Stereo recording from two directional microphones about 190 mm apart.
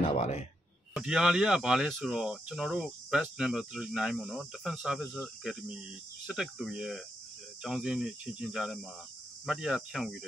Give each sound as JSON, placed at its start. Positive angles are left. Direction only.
{"t": 0.1, "sound": "speech", "side_deg": 35}
{"t": 0.9, "sound": "speech", "side_deg": -5}